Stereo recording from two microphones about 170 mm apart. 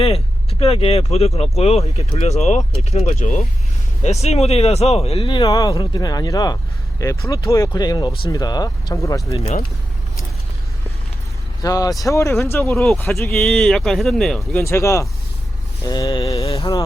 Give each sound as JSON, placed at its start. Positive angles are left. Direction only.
{"t": 0.6, "sound": "speech", "side_deg": 35}
{"t": 11.6, "sound": "speech", "side_deg": 20}
{"t": 12.7, "sound": "speech", "side_deg": 0}
{"t": 14.6, "sound": "speech", "side_deg": 15}
{"t": 16.4, "sound": "speech", "side_deg": 35}